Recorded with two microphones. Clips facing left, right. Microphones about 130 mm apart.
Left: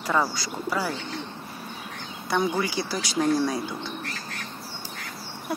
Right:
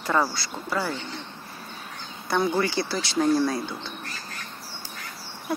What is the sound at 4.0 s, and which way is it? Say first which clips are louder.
Bird: left 3 dB; 90° left.